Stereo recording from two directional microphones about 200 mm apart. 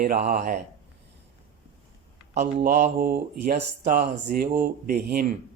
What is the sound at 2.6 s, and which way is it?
Speech, 45° right (ahead or behind).